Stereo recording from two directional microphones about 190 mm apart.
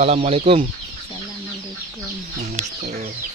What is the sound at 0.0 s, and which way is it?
Speech, 35° right (ahead or behind).